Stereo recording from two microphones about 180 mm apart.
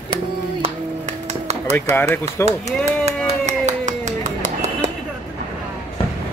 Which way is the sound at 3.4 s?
40° right (ahead or behind).